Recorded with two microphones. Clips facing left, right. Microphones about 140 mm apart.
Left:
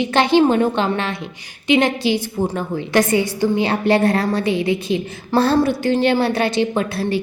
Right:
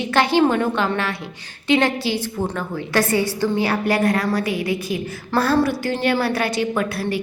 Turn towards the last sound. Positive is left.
turn(degrees=25)  # may be behind; listen again after turning